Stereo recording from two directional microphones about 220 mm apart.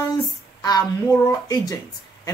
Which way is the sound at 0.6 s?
20° left (ahead or behind).